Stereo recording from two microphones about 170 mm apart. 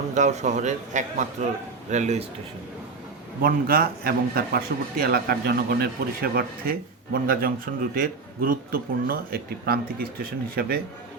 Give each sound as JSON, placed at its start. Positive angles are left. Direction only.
{"t": 0.1, "sound": "a man's voice", "side_deg": -45}
{"t": 3.4, "sound": "a man's voice", "side_deg": -60}